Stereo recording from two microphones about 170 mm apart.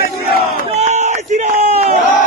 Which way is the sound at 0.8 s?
45° right (ahead or behind).